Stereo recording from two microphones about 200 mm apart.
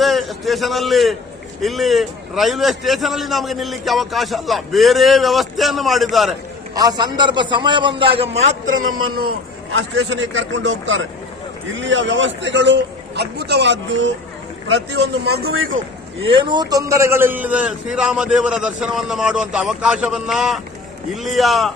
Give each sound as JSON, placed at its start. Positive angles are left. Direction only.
{"t": 0.0, "sound": "a man's voice", "side_deg": 0}
{"t": 6.7, "sound": "a man's voice", "side_deg": -20}
{"t": 9.7, "sound": "a man's voice", "side_deg": -65}
{"t": 16.2, "sound": "a man's voice", "side_deg": -25}